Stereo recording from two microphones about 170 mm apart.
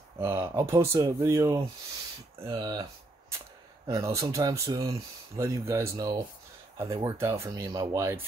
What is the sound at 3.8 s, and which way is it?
Speech, 20° right (ahead or behind).